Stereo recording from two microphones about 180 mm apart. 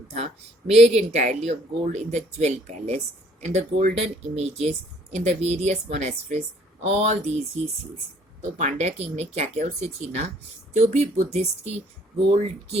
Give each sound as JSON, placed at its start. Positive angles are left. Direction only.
{"t": 0.7, "sound": "speech", "side_deg": -40}